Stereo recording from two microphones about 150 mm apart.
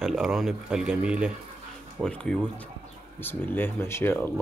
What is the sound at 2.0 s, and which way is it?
Speech, 5° left (ahead or behind).